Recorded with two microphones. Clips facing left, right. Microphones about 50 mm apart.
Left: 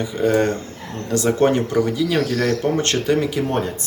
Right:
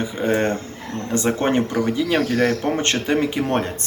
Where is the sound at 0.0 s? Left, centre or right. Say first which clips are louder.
Left 2 dB; right.